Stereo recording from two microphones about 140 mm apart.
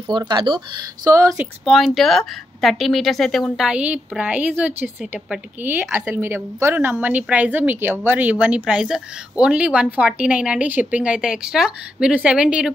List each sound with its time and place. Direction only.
0.1 s speech: 35° right (ahead or behind)
1.0 s speech: 25° right (ahead or behind)
1.6 s speech: centre (ahead or behind)